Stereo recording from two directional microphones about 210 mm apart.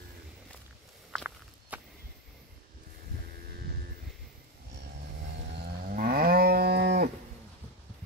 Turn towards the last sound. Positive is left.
turn(degrees=-50)  # may be behind; listen again after turning